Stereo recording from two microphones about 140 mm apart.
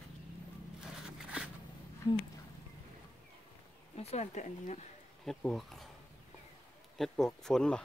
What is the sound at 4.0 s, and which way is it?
Speech, 50° left (ahead or behind).